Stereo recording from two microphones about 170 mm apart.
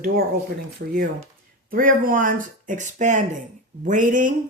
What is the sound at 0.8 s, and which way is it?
Speech, 65° right (ahead or behind).